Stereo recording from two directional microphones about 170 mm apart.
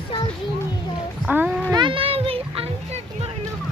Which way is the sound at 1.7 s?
30° right (ahead or behind).